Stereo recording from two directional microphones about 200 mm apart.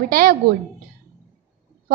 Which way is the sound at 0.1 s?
45° right (ahead or behind).